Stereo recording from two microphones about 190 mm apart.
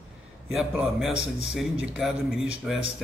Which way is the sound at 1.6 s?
Centre (ahead or behind).